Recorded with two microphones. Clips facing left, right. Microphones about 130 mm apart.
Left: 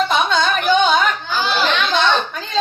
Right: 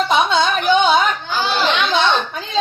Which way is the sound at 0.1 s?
15° right (ahead or behind).